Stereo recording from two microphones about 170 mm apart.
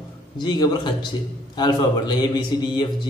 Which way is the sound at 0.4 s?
25° left (ahead or behind).